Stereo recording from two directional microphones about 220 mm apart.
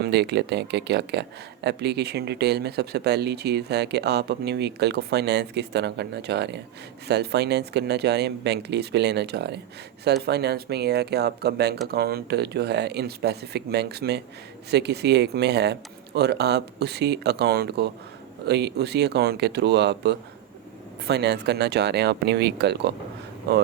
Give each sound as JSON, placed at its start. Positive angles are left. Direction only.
{"t": 0.0, "sound": "speech", "side_deg": -50}